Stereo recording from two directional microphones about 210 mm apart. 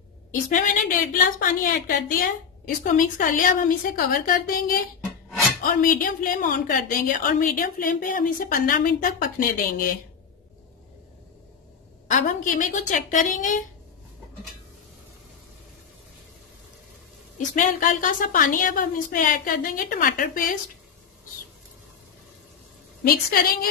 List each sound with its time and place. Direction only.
0.5 s a woman's voice: 40° left (ahead or behind)
12.1 s a woman's voice: 40° left (ahead or behind)
17.4 s a woman's voice: 40° left (ahead or behind)
23.0 s a woman's voice: 45° left (ahead or behind)